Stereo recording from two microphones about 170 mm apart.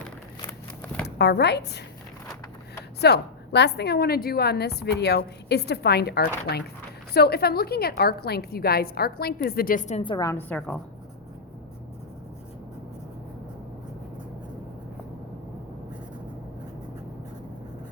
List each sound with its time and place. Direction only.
1.0 s speech: 75° left (ahead or behind)
3.0 s a woman's voice: 80° left; by 10.2 s 30° left (ahead or behind)
10.2 s a woman's voice: 10° left (ahead or behind)